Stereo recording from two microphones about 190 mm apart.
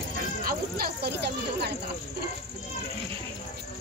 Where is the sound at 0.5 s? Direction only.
50° right (ahead or behind).